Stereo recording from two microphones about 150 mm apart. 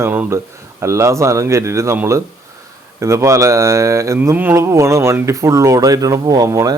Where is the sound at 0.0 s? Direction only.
15° right (ahead or behind).